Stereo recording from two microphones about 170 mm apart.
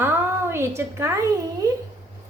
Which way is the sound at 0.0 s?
15° right (ahead or behind).